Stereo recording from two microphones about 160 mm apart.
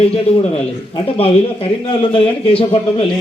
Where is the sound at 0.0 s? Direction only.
40° left (ahead or behind).